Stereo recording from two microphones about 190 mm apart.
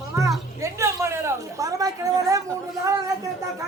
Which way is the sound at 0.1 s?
15° right (ahead or behind).